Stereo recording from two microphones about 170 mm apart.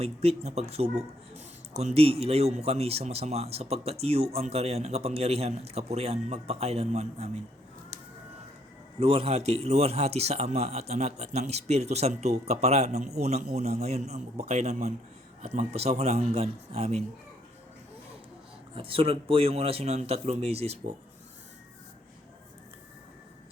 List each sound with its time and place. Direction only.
0.0 s speech: 35° right (ahead or behind)
9.0 s speech: 35° right (ahead or behind)
18.7 s speech: 30° right (ahead or behind)